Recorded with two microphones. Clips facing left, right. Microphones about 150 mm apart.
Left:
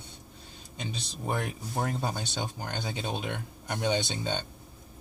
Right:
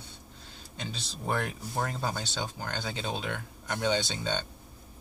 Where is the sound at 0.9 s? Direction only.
15° left (ahead or behind).